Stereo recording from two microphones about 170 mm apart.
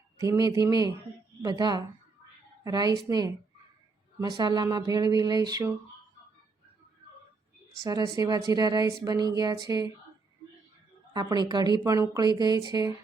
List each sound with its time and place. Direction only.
0.2 s speech: 20° right (ahead or behind)
8.1 s speech: 20° right (ahead or behind)
11.1 s speech: 25° right (ahead or behind)